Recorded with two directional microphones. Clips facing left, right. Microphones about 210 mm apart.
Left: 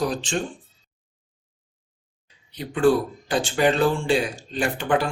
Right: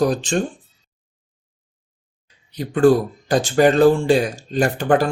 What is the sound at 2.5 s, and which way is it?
Speech, 40° right (ahead or behind).